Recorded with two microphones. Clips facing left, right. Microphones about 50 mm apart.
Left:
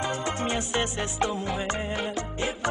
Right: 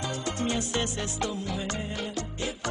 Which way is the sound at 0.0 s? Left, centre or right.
Left.